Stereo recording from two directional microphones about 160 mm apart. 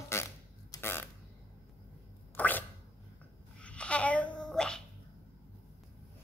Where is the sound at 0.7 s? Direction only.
15° left (ahead or behind).